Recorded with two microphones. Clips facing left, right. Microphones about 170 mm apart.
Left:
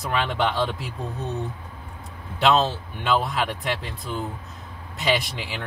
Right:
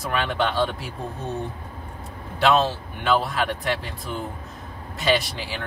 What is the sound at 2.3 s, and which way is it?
Speech, 20° left (ahead or behind).